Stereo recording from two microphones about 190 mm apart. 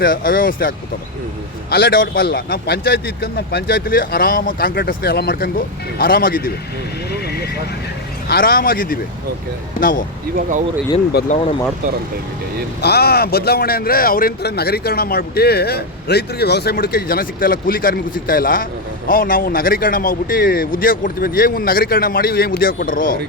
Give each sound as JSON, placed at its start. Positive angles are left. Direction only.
{"t": 0.0, "sound": "speech", "side_deg": 50}
{"t": 1.7, "sound": "speech", "side_deg": 55}
{"t": 7.1, "sound": "neigh", "side_deg": 55}
{"t": 8.3, "sound": "speech", "side_deg": 50}
{"t": 11.1, "sound": "speech", "side_deg": 55}
{"t": 12.8, "sound": "speech", "side_deg": 55}